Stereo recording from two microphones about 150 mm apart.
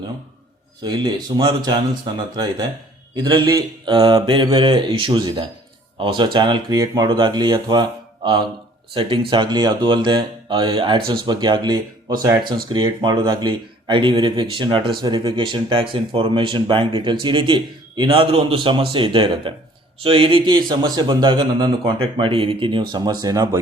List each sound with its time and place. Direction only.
0.8 s speech: 30° right (ahead or behind)